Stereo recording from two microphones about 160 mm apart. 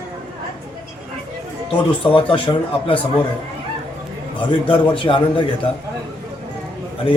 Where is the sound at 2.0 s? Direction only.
35° left (ahead or behind).